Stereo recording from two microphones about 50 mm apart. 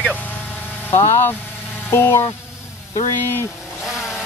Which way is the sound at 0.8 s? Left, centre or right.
Left.